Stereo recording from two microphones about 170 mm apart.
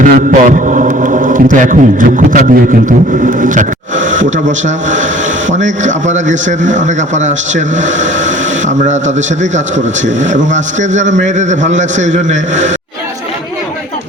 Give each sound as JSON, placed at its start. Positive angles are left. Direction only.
{"t": 0.0, "sound": "a man's voice", "side_deg": -55}
{"t": 5.5, "sound": "a man's voice", "side_deg": -45}